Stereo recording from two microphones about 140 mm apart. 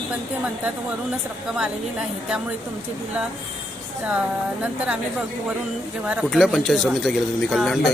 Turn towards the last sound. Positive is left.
turn(degrees=0)  # may be behind; listen again after turning